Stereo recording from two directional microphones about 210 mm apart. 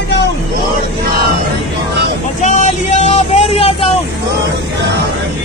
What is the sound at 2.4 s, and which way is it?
Vehicle, 35° left (ahead or behind).